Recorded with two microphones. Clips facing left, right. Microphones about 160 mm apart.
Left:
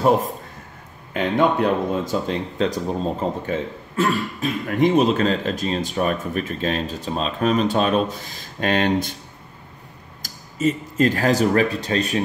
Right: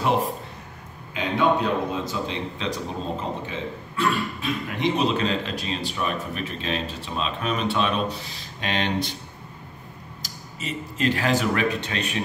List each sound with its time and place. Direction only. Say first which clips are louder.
1.1 s speech: left 3 dB; 50° left (ahead or behind)
10.2 s speech: left 14 dB; 45° left (ahead or behind)